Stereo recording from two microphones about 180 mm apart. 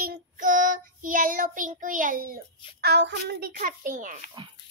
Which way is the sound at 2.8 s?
70° right (ahead or behind).